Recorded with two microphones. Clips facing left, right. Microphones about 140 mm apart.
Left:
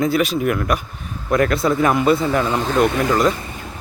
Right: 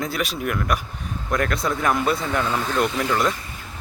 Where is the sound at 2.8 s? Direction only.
60° left (ahead or behind).